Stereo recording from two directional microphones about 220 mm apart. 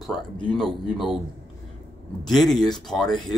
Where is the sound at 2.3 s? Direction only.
Centre (ahead or behind).